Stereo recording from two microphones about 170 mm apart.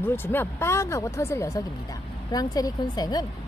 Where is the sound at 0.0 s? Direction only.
10° left (ahead or behind).